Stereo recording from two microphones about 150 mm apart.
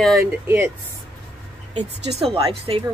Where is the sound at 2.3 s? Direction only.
40° right (ahead or behind).